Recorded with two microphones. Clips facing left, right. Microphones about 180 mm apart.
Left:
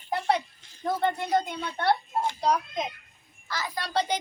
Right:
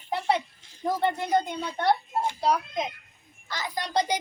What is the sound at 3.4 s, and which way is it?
Speech, 20° right (ahead or behind).